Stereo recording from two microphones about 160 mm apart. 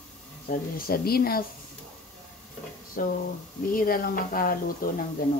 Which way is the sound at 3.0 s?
60° left (ahead or behind).